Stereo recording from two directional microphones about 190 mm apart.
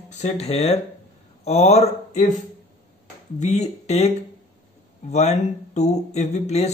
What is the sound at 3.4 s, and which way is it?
Speech, 35° left (ahead or behind).